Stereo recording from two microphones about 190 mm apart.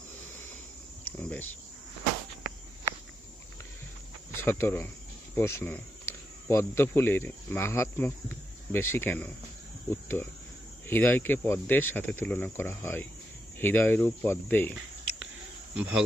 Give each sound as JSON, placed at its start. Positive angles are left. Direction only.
{"t": 1.0, "sound": "speech", "side_deg": 10}
{"t": 4.4, "sound": "speech", "side_deg": 10}
{"t": 15.7, "sound": "speech", "side_deg": -5}